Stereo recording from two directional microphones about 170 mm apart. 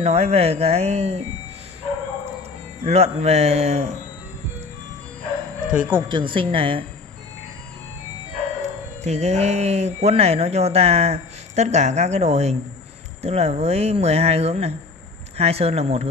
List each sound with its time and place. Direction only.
0.0 s speech: 40° right (ahead or behind)
2.8 s speech: 40° right (ahead or behind)
5.7 s speech: 10° right (ahead or behind)
6.0 s speech: 30° right (ahead or behind)
9.0 s speech: 40° right (ahead or behind)